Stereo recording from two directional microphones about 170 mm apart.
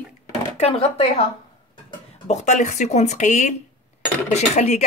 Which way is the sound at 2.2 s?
45° left (ahead or behind).